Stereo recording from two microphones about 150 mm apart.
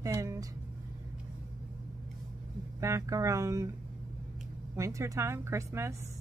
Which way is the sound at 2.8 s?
20° right (ahead or behind).